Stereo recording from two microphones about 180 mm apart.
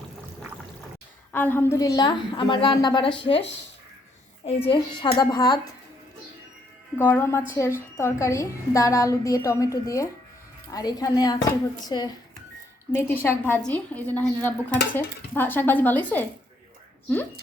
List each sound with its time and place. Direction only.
1.3 s a woman's voice: 10° left (ahead or behind)
6.9 s a woman's voice: 10° left (ahead or behind)